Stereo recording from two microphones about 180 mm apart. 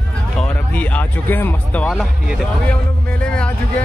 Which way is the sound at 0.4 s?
10° left (ahead or behind).